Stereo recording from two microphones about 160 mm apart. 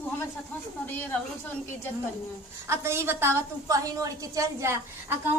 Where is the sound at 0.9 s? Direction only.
10° left (ahead or behind).